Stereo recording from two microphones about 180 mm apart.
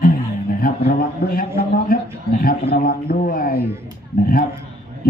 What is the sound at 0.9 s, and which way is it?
Speech, 55° left (ahead or behind).